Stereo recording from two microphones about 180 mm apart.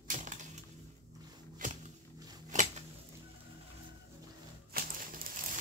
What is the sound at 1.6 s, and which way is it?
Music, 45° right (ahead or behind).